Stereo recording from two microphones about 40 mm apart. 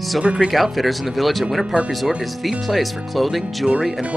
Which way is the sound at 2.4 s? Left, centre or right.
Centre.